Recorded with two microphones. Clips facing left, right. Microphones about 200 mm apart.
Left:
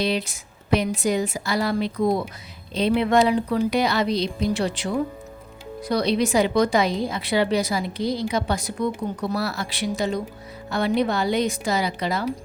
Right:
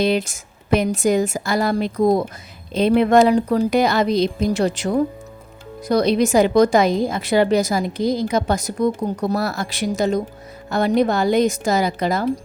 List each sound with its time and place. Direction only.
0.0 s a woman's voice: 50° right (ahead or behind)